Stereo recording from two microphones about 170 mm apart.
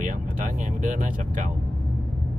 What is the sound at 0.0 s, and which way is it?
Vehicle, 50° right (ahead or behind).